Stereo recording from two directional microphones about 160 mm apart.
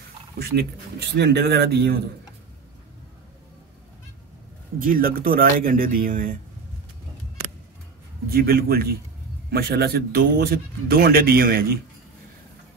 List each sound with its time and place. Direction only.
0.4 s speech: 90° right
4.7 s speech: 60° right (ahead or behind)
8.3 s speech: 70° right (ahead or behind)